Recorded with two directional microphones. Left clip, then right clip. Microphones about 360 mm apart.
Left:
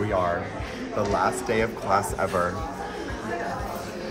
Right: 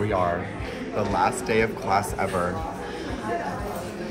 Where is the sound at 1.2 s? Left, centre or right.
Centre.